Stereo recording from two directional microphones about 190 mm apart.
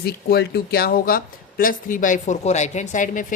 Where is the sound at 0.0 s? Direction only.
55° left (ahead or behind).